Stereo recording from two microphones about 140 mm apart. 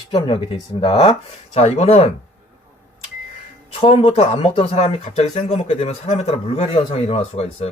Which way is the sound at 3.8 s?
45° left (ahead or behind).